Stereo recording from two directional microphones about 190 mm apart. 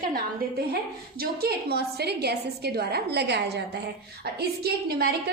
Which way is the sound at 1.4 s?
55° right (ahead or behind).